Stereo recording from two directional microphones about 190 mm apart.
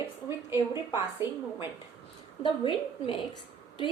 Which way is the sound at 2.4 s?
25° left (ahead or behind).